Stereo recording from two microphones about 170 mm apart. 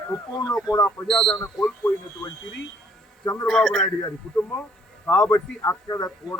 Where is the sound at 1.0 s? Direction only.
5° left (ahead or behind).